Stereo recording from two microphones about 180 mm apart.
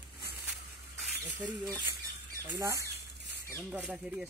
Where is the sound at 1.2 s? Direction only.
15° right (ahead or behind).